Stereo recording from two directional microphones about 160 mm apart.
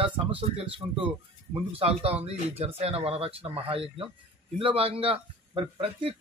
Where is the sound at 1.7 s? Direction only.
35° right (ahead or behind).